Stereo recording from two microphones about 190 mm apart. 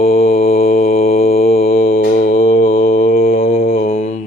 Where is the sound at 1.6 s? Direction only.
50° left (ahead or behind).